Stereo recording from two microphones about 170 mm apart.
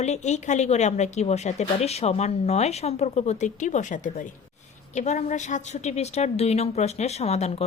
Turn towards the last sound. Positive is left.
turn(degrees=40)  # may be behind; listen again after turning